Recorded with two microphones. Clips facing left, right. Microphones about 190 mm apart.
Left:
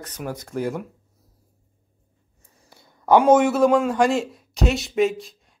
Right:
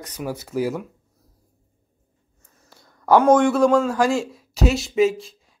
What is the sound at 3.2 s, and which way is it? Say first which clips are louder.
A man's voice: right 1 dB; 5° left (ahead or behind).